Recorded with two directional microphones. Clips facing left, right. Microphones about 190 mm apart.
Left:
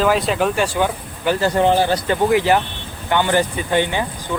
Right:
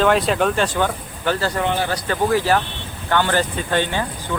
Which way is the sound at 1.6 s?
30° left (ahead or behind).